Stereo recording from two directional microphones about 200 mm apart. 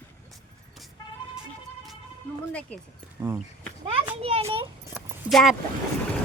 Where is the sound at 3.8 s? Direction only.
30° right (ahead or behind).